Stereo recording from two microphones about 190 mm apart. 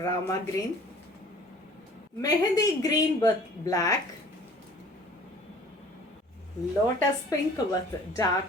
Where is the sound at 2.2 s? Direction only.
20° left (ahead or behind).